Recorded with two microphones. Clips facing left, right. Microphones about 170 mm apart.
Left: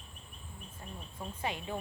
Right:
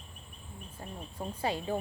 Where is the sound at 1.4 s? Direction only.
35° right (ahead or behind).